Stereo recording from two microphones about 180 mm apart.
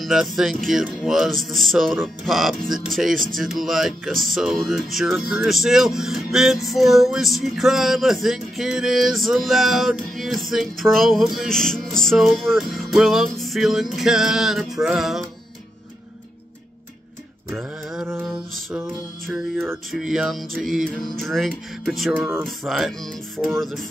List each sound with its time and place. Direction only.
0.0 s speech: centre (ahead or behind)
17.5 s a sound: 5° right (ahead or behind)
18.7 s music: 5° right (ahead or behind)
19.9 s speech: centre (ahead or behind)
22.1 s music: 10° right (ahead or behind)
22.4 s speech: centre (ahead or behind)